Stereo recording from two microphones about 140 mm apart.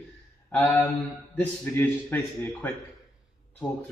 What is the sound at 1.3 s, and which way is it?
A man's voice, 15° left (ahead or behind).